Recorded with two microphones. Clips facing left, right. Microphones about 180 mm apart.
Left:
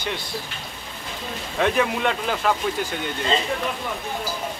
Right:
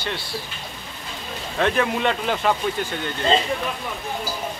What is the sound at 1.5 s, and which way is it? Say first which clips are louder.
Speech: even; 5° left (ahead or behind).